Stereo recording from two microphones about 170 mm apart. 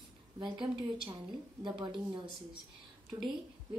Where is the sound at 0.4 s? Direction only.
25° right (ahead or behind).